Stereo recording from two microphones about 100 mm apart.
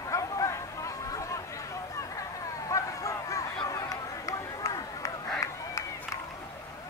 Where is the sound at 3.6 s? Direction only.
35° left (ahead or behind).